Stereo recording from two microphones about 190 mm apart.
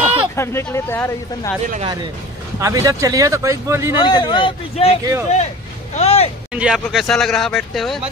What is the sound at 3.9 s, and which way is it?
A man's voice, 25° left (ahead or behind).